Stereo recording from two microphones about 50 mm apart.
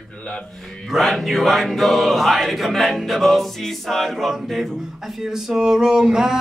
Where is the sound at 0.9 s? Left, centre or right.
Centre.